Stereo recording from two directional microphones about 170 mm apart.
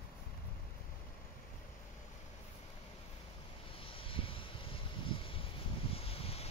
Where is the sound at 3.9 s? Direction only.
30° left (ahead or behind).